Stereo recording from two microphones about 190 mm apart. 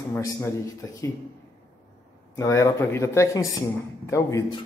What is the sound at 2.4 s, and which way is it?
Speech, 15° left (ahead or behind).